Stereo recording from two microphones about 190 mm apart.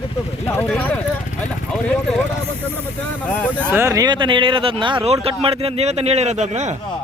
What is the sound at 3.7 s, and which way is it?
Speech, 15° right (ahead or behind).